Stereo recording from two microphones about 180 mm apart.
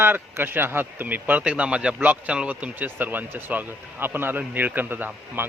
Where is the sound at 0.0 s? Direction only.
10° right (ahead or behind).